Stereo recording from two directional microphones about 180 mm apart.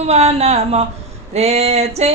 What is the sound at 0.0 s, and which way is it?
Speech, 35° right (ahead or behind).